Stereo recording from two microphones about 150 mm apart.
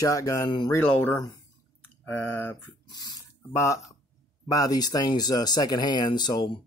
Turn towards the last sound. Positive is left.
turn(degrees=25)  # may be behind; listen again after turning